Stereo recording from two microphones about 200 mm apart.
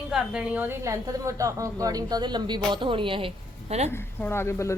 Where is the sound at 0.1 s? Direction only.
5° right (ahead or behind); by 3.9 s 30° right (ahead or behind).